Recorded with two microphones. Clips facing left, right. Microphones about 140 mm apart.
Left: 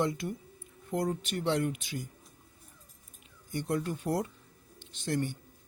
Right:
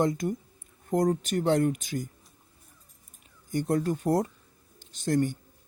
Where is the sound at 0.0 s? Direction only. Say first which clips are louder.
Right 5 dB; 45° right (ahead or behind).